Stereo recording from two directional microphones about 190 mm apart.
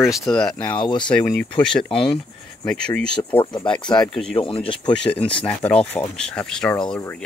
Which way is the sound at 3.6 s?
5° left (ahead or behind).